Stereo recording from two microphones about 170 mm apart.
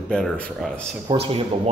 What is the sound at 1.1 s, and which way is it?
Speech, 25° right (ahead or behind).